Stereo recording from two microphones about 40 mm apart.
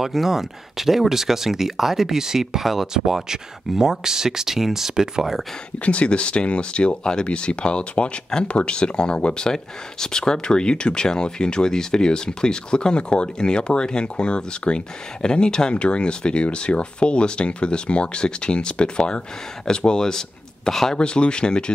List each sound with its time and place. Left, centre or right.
0.0 s speech: centre
5.9 s speech: left; by 21.0 s centre
21.0 s speech: left